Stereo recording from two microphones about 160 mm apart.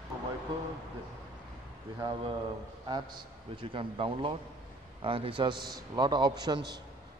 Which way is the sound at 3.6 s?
35° right (ahead or behind).